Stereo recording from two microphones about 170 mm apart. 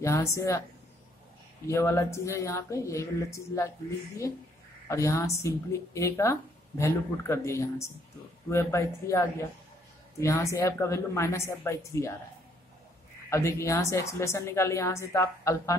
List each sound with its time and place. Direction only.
0.0 s a woman's voice: 15° left (ahead or behind)
1.7 s a woman's voice: 15° left (ahead or behind)
4.8 s a woman's voice: 15° left (ahead or behind)
13.3 s a woman's voice: 15° left (ahead or behind)